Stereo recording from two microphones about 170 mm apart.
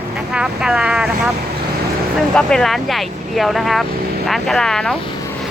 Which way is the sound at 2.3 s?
5° left (ahead or behind).